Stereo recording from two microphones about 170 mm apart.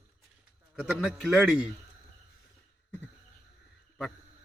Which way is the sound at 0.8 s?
5° right (ahead or behind).